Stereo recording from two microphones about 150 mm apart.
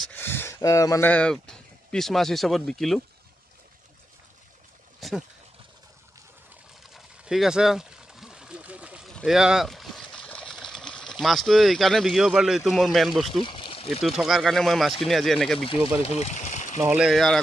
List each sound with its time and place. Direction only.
0.0 s speech: 15° left (ahead or behind)
1.1 s speech: 5° left (ahead or behind)
5.0 s speech: centre (ahead or behind)
6.9 s a sound: 5° right (ahead or behind)
9.1 s speech: centre (ahead or behind)
13.4 s pour: 35° left (ahead or behind)
14.0 s speech: centre (ahead or behind)
15.6 s speech: 35° left (ahead or behind); by 16.8 s 55° left (ahead or behind)
16.9 s speech: centre (ahead or behind)